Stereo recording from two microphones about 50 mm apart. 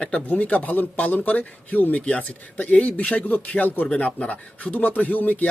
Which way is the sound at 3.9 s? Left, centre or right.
Left.